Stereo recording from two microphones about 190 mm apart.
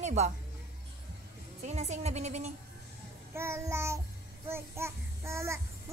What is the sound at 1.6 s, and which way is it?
Speech, 35° right (ahead or behind).